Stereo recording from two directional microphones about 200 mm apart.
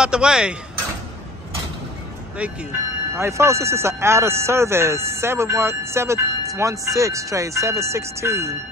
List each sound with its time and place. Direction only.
0.0 s speech: 5° right (ahead or behind)
3.2 s speech: 15° right (ahead or behind)